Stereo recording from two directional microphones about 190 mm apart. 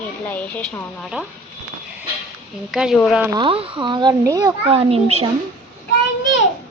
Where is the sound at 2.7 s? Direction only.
5° right (ahead or behind).